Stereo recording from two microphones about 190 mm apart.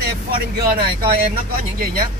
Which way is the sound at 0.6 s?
55° right (ahead or behind).